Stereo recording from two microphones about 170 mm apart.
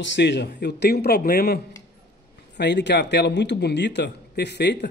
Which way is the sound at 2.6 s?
90° left.